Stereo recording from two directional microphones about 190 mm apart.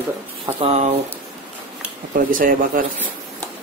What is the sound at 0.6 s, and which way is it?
Speech, 35° right (ahead or behind).